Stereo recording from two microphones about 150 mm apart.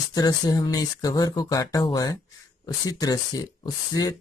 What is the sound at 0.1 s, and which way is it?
Speech, 25° left (ahead or behind).